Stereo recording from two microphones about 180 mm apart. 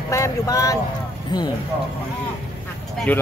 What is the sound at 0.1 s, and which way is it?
Speech, 15° left (ahead or behind).